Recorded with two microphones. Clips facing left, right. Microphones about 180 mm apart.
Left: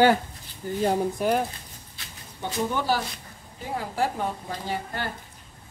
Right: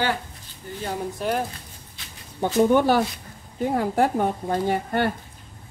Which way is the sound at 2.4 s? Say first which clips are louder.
Right 10 dB; 55° right (ahead or behind).